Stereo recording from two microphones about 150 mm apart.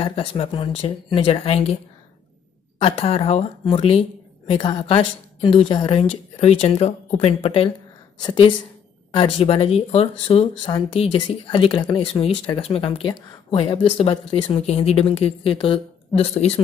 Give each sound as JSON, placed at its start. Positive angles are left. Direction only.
{"t": 0.0, "sound": "speech", "side_deg": 35}
{"t": 2.8, "sound": "a woman's voice", "side_deg": 40}